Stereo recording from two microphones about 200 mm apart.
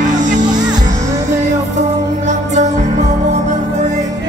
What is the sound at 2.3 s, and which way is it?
Music, 35° right (ahead or behind).